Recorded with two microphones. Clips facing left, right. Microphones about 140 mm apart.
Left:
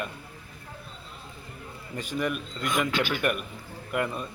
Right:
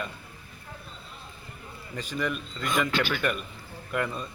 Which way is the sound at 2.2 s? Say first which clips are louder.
Left 1 dB; 10° left (ahead or behind).